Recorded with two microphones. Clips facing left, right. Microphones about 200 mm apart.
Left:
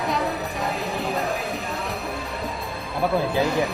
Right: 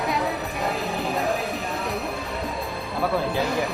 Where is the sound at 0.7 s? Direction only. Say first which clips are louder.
Right 1 dB; centre (ahead or behind).